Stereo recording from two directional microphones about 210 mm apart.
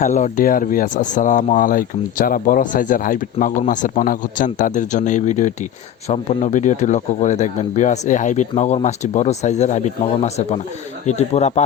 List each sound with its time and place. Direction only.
0.0 s speech: 35° left (ahead or behind)